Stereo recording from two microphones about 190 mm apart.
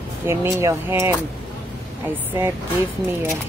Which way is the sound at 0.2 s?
15° right (ahead or behind).